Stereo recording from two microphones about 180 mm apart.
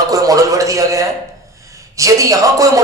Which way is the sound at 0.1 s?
20° right (ahead or behind).